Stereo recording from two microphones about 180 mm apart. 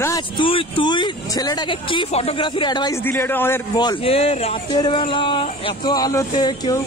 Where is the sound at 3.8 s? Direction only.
30° left (ahead or behind).